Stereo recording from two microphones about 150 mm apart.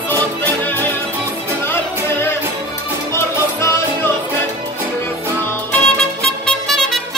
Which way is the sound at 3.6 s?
20° left (ahead or behind).